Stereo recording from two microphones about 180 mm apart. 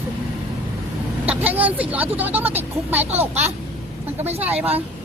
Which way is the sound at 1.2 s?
10° right (ahead or behind).